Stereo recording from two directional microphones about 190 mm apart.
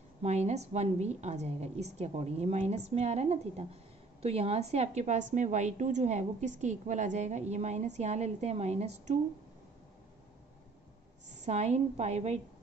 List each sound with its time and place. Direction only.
0.2 s a woman's voice: 35° right (ahead or behind)
11.4 s a woman's voice: 35° right (ahead or behind)